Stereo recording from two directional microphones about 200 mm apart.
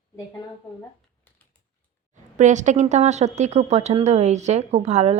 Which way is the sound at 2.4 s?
35° right (ahead or behind).